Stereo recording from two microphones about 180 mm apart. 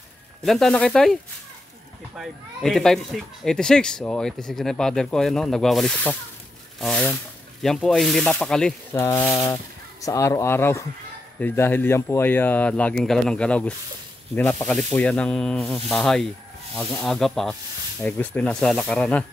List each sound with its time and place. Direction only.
0.4 s speech: centre (ahead or behind)
2.1 s speech: centre (ahead or behind)